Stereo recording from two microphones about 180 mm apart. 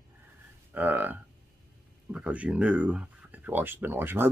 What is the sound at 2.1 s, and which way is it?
Speech, 5° right (ahead or behind).